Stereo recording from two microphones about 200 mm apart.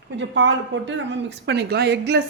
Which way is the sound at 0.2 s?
65° right (ahead or behind).